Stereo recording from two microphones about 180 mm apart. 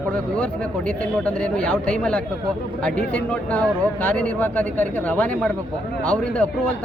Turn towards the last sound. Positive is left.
turn(degrees=10)  # may be behind; listen again after turning